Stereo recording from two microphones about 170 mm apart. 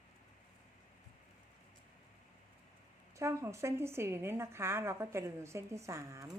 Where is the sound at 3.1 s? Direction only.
15° right (ahead or behind).